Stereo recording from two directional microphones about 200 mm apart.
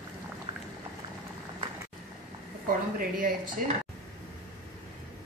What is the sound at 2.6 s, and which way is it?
A woman's voice, 45° right (ahead or behind).